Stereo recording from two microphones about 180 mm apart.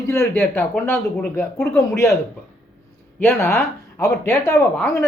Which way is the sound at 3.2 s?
15° left (ahead or behind).